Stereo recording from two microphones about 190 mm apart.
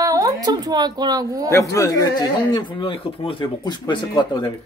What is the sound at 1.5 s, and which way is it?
Speech, 15° left (ahead or behind).